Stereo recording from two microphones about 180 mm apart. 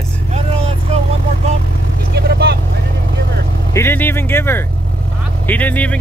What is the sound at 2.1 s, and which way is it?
Vehicle, 65° right (ahead or behind).